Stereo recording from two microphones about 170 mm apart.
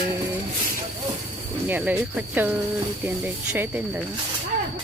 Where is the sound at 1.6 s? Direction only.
10° right (ahead or behind).